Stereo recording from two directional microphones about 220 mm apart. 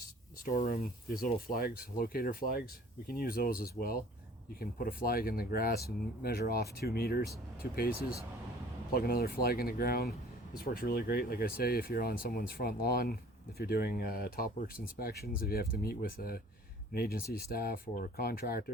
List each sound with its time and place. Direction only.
0.4 s speech: 40° left (ahead or behind)